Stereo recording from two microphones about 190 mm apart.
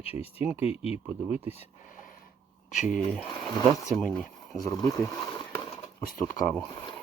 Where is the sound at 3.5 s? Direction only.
15° left (ahead or behind).